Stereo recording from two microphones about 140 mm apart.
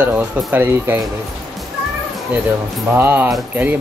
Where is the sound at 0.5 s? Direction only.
15° right (ahead or behind).